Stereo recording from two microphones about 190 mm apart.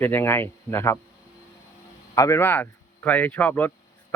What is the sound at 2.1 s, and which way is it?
Speech, 15° left (ahead or behind).